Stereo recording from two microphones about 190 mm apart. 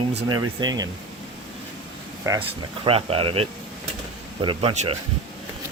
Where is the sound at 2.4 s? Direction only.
30° right (ahead or behind).